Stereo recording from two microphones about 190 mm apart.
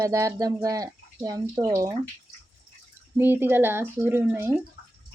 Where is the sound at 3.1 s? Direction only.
10° right (ahead or behind).